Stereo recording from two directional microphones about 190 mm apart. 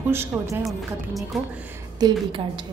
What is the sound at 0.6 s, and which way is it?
Speech, centre (ahead or behind).